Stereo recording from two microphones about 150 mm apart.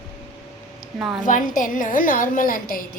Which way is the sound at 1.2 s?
60° left (ahead or behind).